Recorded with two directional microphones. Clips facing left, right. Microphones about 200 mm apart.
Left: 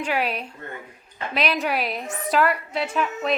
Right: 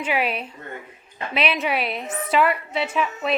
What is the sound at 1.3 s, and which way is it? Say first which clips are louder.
A woman's voice: right 1 dB; 5° right (ahead or behind).